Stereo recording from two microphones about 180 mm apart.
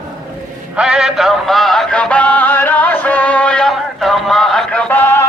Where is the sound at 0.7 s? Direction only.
5° right (ahead or behind).